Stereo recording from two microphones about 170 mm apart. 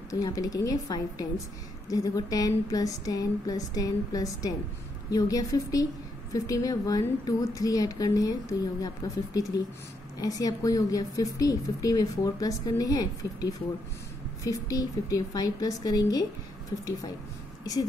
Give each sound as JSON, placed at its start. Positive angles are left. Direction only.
{"t": 0.1, "sound": "speech", "side_deg": 20}